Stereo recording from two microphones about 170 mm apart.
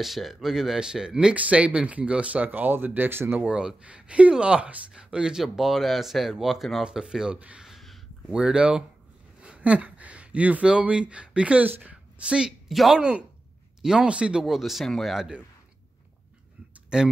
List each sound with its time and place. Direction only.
0.0 s speech: centre (ahead or behind)
16.9 s speech: 5° right (ahead or behind)